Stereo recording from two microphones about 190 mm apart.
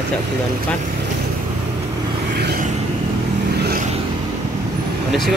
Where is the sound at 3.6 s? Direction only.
50° right (ahead or behind).